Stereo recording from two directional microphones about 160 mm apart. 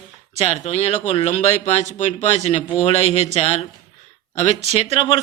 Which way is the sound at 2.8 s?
40° left (ahead or behind).